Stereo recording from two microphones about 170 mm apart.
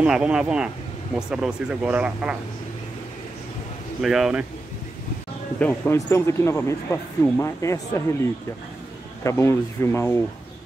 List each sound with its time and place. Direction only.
0.0 s speech: 5° right (ahead or behind)
4.0 s speech: centre (ahead or behind)
5.6 s speech: 10° left (ahead or behind)
9.2 s speech: 15° left (ahead or behind)